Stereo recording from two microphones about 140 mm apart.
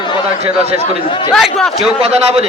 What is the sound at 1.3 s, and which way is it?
Speech, 5° left (ahead or behind).